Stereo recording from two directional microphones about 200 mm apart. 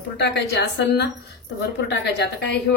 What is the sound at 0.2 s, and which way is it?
A woman's voice, 60° left (ahead or behind).